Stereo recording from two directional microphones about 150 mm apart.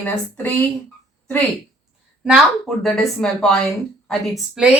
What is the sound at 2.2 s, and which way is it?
A woman's voice, 5° right (ahead or behind).